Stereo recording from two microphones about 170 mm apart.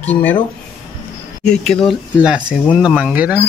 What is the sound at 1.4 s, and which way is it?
Speech, 5° left (ahead or behind).